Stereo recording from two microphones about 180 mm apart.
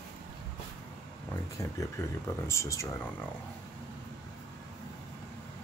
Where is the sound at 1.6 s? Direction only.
15° left (ahead or behind).